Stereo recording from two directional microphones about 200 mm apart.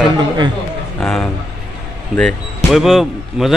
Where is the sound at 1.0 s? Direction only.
5° left (ahead or behind).